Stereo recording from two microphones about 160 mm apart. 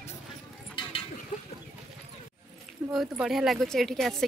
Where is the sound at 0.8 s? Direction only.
30° left (ahead or behind).